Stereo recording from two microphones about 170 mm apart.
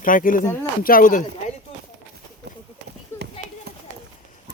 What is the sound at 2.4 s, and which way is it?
Run, 75° right (ahead or behind).